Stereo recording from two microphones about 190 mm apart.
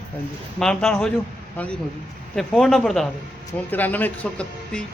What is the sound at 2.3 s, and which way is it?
A man's voice, 5° left (ahead or behind).